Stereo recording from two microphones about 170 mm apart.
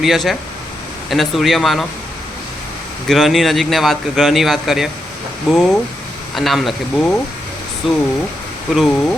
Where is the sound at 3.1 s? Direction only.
Centre (ahead or behind).